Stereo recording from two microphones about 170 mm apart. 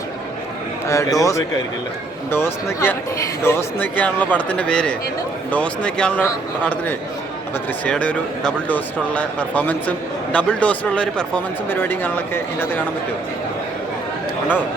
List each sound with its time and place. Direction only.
0.9 s a man's voice: 20° left (ahead or behind)
7.9 s speech: 5° left (ahead or behind)